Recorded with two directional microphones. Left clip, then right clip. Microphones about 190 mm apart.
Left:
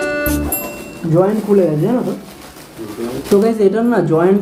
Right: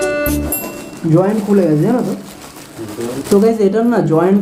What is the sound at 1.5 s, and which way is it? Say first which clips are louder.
Speech: left 2 dB; 15° right (ahead or behind).